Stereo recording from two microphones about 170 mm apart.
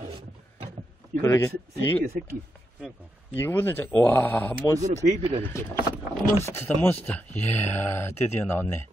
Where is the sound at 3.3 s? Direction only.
10° left (ahead or behind).